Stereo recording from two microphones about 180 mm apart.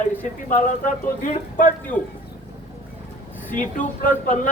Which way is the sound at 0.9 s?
45° left (ahead or behind).